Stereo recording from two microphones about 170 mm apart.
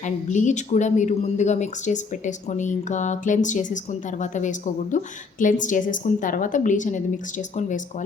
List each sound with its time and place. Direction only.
0.0 s speech: 45° left (ahead or behind)